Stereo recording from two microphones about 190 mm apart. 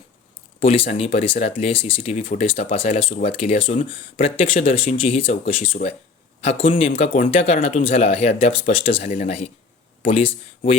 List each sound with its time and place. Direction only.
0.6 s speech: 35° left (ahead or behind)